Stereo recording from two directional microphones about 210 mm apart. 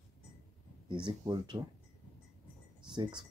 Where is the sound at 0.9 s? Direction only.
20° right (ahead or behind).